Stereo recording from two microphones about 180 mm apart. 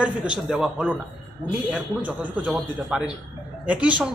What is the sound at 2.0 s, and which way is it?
Speech, 10° right (ahead or behind).